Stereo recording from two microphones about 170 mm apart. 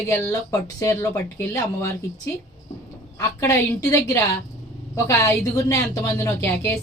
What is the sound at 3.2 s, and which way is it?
Speech, 15° left (ahead or behind).